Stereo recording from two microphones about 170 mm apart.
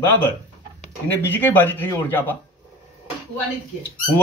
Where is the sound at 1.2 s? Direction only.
10° left (ahead or behind).